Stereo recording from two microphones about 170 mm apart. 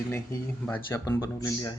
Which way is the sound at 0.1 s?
10° left (ahead or behind).